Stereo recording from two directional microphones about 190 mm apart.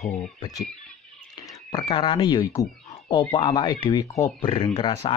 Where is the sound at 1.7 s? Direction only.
25° left (ahead or behind).